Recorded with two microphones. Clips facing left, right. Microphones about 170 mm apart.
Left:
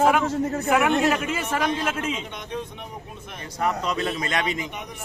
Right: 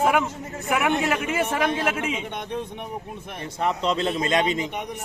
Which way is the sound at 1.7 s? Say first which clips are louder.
Right 1 dB; 60° right (ahead or behind).